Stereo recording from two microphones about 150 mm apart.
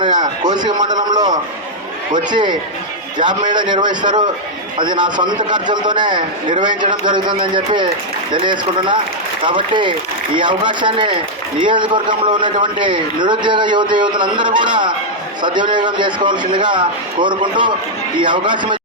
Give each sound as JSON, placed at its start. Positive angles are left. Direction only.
{"t": 0.0, "sound": "a man's voice", "side_deg": -30}